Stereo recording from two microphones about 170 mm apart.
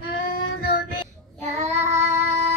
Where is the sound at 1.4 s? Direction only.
40° right (ahead or behind).